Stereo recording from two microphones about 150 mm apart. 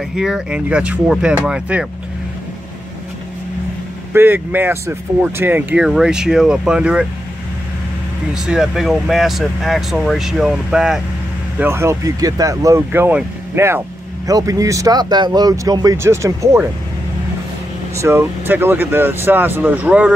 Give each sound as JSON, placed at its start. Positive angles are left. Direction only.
{"t": 0.1, "sound": "speech", "side_deg": -5}
{"t": 4.1, "sound": "speech", "side_deg": -15}
{"t": 8.5, "sound": "speech", "side_deg": -5}
{"t": 11.5, "sound": "speech", "side_deg": -15}
{"t": 17.9, "sound": "speech", "side_deg": -15}